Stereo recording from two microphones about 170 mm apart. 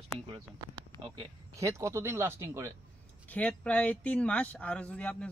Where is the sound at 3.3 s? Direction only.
5° left (ahead or behind).